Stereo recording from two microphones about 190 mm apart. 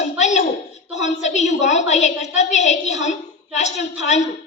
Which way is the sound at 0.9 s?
35° left (ahead or behind).